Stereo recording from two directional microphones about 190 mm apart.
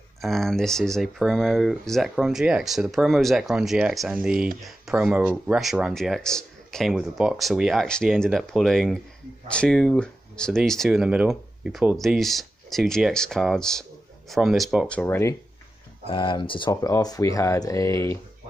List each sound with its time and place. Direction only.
0.2 s speech: centre (ahead or behind)
16.1 s speech: 25° left (ahead or behind)